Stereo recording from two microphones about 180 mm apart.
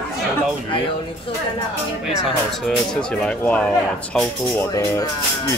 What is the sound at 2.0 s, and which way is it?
Speech, centre (ahead or behind).